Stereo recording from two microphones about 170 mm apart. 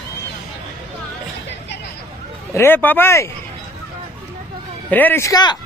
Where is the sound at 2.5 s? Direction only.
10° left (ahead or behind).